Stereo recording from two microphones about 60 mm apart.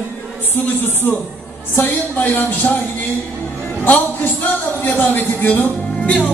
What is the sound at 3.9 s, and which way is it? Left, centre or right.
A man's voice, left.